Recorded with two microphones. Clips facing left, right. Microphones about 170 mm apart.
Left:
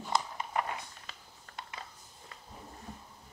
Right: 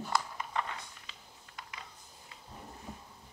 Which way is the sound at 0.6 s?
25° left (ahead or behind).